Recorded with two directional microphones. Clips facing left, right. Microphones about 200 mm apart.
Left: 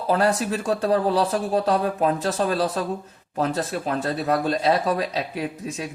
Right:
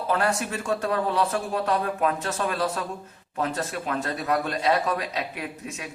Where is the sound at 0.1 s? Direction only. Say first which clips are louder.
Left 5 dB; 35° left (ahead or behind).